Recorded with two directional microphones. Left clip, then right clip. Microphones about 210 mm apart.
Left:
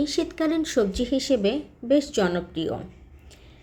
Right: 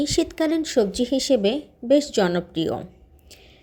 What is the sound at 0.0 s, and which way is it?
Speech, 30° right (ahead or behind).